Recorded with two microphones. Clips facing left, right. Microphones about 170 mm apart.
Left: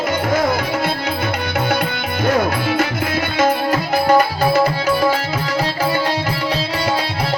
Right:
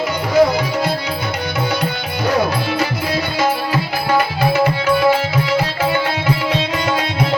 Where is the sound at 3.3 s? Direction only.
45° left (ahead or behind).